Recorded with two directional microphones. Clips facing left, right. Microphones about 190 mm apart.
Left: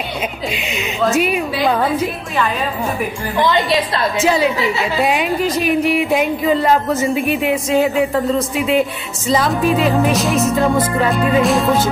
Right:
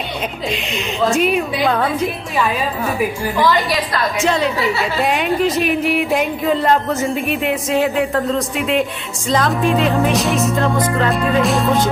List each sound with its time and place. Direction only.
0.5 s a woman's voice: centre (ahead or behind)
3.3 s a woman's voice: 20° left (ahead or behind)
4.2 s a woman's voice: 5° left (ahead or behind)